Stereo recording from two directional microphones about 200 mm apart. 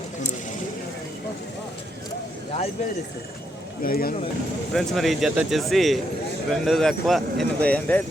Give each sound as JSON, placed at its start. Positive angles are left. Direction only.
{"t": 3.8, "sound": "speech", "side_deg": 45}
{"t": 4.7, "sound": "speech", "side_deg": 0}